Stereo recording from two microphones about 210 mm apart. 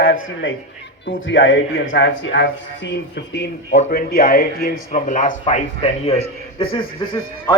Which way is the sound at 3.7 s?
40° left (ahead or behind).